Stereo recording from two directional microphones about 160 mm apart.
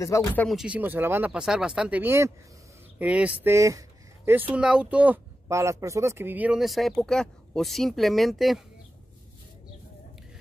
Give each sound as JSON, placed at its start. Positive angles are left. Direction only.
{"t": 0.0, "sound": "speech", "side_deg": 20}
{"t": 0.5, "sound": "speech", "side_deg": -5}